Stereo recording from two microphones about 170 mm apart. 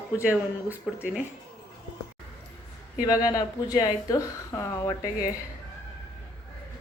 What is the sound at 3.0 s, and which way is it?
Speech, 20° left (ahead or behind).